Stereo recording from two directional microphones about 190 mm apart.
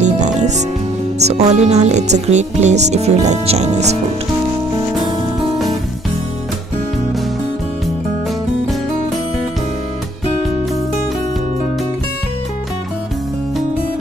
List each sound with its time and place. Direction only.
0.0 s music: 40° right (ahead or behind)
1.2 s speech: 35° right (ahead or behind)